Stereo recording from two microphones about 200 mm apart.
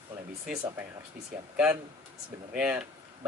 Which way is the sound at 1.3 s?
5° right (ahead or behind).